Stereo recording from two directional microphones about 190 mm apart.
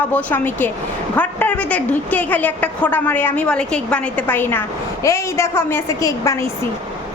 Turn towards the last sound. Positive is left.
turn(degrees=15)  # may be behind; listen again after turning